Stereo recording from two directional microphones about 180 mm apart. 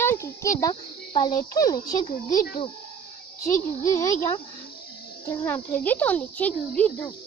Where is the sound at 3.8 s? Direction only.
15° left (ahead or behind).